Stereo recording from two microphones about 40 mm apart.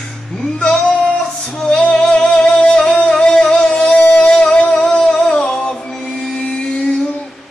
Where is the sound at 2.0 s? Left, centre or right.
Left.